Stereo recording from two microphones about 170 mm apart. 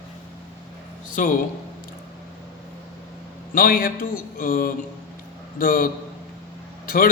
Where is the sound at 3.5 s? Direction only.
60° left (ahead or behind).